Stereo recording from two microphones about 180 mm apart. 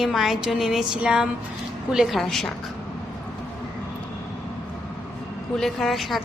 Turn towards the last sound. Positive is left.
turn(degrees=0)  # may be behind; listen again after turning